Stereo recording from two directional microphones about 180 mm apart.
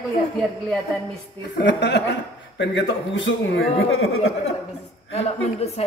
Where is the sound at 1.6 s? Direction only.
75° left (ahead or behind).